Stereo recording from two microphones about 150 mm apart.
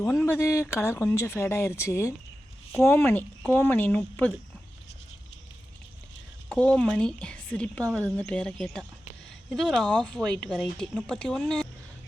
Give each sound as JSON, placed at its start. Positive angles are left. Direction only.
{"t": 0.0, "sound": "speech", "side_deg": 10}
{"t": 6.5, "sound": "speech", "side_deg": 5}